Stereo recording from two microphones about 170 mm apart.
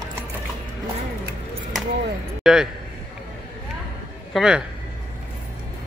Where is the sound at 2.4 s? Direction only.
5° right (ahead or behind).